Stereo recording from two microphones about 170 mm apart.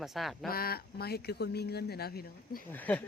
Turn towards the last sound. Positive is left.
turn(degrees=10)  # may be behind; listen again after turning